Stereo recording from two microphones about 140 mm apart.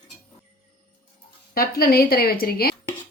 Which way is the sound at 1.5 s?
90° left.